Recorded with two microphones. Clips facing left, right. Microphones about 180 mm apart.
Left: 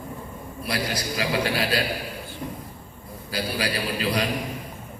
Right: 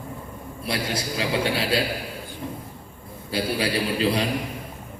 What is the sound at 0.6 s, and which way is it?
A man's voice, 25° right (ahead or behind).